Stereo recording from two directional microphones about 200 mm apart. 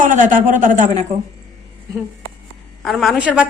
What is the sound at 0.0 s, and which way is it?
A man's voice, 40° right (ahead or behind).